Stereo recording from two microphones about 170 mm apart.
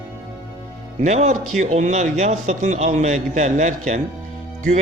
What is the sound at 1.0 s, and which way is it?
A man's voice, 40° right (ahead or behind).